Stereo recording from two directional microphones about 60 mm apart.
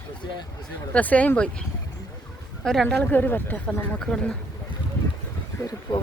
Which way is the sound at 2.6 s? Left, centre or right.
Centre.